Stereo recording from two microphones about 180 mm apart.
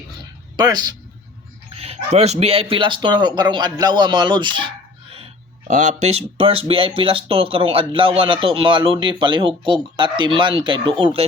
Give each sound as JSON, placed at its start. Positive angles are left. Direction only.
{"t": 0.5, "sound": "speech", "side_deg": -20}
{"t": 1.7, "sound": "speech", "side_deg": -35}
{"t": 5.1, "sound": "speech", "side_deg": -35}